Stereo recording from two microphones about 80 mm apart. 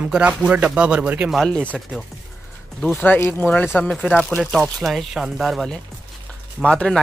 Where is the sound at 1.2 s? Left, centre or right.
Centre.